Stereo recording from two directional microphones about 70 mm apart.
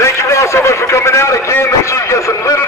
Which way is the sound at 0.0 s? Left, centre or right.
Left.